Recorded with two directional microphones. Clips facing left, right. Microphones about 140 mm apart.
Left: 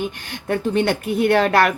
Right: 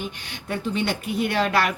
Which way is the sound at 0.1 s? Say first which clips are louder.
Left 7 dB; 50° left (ahead or behind).